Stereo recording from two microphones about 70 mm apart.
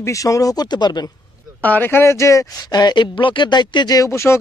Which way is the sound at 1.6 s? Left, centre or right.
Left.